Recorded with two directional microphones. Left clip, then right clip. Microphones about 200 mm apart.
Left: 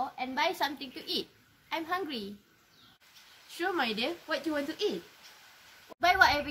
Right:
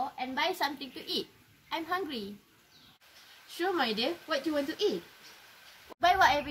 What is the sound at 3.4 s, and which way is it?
Speech, centre (ahead or behind).